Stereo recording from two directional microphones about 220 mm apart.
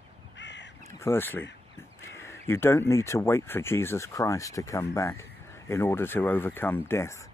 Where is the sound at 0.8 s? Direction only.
10° left (ahead or behind).